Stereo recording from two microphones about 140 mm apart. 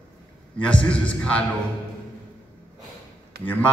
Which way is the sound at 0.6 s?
10° left (ahead or behind).